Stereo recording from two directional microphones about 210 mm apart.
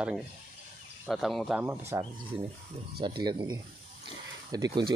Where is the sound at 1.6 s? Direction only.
15° right (ahead or behind).